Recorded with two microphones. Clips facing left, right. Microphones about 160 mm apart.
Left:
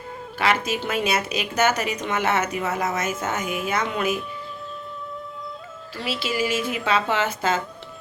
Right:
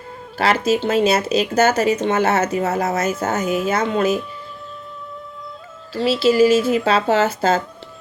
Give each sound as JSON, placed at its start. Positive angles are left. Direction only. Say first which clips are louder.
{"t": 0.3, "sound": "a woman's voice", "louder": "right 6 dB", "side_deg": -35}
{"t": 5.9, "sound": "a woman's voice", "louder": "right 11 dB", "side_deg": -30}